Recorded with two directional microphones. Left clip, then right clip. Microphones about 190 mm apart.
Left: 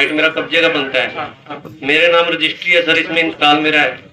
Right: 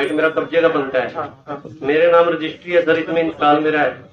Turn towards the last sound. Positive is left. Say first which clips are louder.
# left 3 dB
turn(degrees=-55)  # may be behind; listen again after turning